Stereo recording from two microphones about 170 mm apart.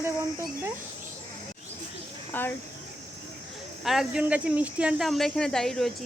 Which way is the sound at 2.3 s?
10° left (ahead or behind).